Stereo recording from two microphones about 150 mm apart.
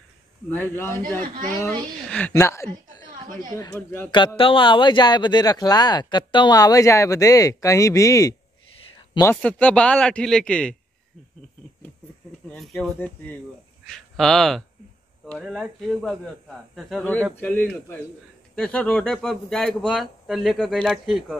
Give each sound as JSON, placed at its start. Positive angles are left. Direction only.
{"t": 0.5, "sound": "a man's voice", "side_deg": 15}
{"t": 4.4, "sound": "speech", "side_deg": 35}
{"t": 9.2, "sound": "a man's voice", "side_deg": 10}
{"t": 12.4, "sound": "speech", "side_deg": 0}
{"t": 13.0, "sound": "a man's voice", "side_deg": 10}
{"t": 17.0, "sound": "a man's voice", "side_deg": 10}